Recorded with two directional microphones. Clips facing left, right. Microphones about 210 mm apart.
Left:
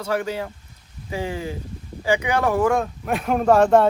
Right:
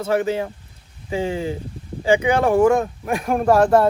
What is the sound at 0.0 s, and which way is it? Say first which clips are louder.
Speech: right 4 dB; 25° right (ahead or behind).